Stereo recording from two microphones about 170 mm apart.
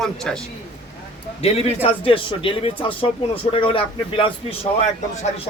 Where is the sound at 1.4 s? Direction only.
35° left (ahead or behind).